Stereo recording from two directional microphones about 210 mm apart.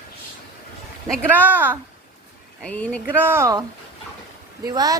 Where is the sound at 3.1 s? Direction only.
10° right (ahead or behind).